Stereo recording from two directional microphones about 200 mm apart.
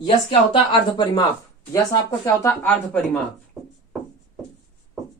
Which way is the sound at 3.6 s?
Centre (ahead or behind).